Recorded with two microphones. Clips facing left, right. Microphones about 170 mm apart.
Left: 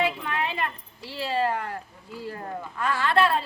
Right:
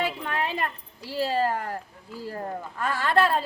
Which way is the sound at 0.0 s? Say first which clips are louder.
Left 1 dB; 40° right (ahead or behind).